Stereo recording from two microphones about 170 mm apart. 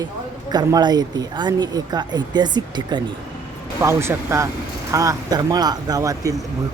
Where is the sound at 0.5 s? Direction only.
25° right (ahead or behind).